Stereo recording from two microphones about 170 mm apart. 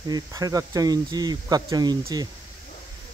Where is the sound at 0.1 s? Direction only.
20° right (ahead or behind).